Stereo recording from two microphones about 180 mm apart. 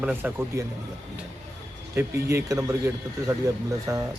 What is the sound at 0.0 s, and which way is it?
Speech, 5° right (ahead or behind).